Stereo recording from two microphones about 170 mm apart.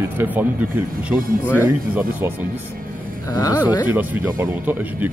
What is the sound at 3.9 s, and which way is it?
Speech, 10° right (ahead or behind).